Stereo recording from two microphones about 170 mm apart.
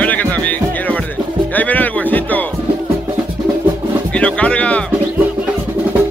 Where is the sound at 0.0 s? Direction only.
10° left (ahead or behind).